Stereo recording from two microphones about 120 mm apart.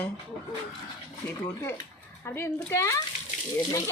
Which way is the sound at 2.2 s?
20° left (ahead or behind).